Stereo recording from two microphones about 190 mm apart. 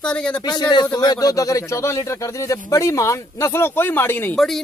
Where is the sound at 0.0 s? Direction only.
5° left (ahead or behind).